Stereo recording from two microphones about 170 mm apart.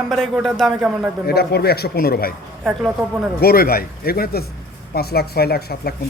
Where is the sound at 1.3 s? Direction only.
70° left (ahead or behind).